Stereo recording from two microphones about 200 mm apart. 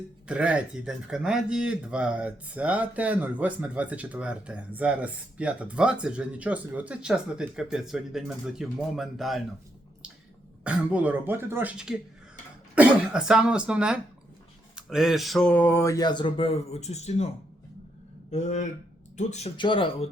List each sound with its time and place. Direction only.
0.3 s speech: 5° right (ahead or behind)
10.6 s speech: 5° right (ahead or behind); by 17.2 s 35° left (ahead or behind)
18.3 s speech: 35° left (ahead or behind)
19.5 s speech: 25° left (ahead or behind)